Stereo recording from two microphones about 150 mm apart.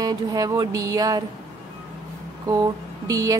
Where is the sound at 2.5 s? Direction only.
25° right (ahead or behind).